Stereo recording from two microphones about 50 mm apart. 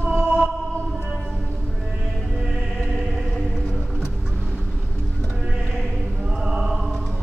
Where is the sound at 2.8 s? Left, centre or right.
Centre.